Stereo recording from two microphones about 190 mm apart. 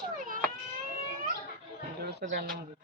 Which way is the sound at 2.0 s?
60° right (ahead or behind).